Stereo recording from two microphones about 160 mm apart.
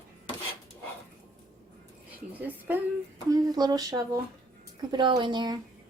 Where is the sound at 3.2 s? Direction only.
25° right (ahead or behind).